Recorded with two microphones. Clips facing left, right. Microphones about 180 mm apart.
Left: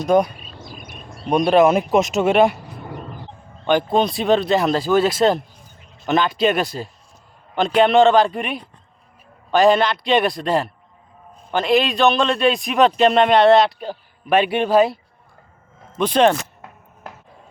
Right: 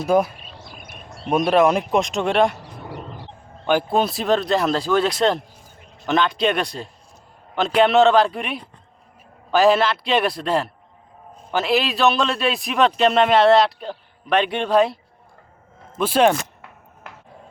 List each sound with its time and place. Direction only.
0.0 s a man's voice: 5° right (ahead or behind)
0.6 s a sound: 55° right (ahead or behind)
1.3 s a man's voice: centre (ahead or behind)
3.7 s a man's voice: 5° right (ahead or behind)
16.0 s speech: 5° right (ahead or behind)